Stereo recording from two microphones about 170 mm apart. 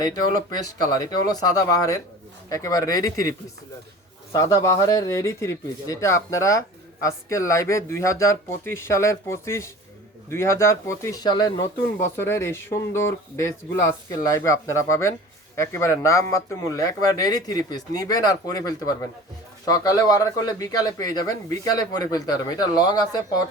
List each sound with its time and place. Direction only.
0.0 s speech: 25° left (ahead or behind)
4.4 s speech: 15° left (ahead or behind)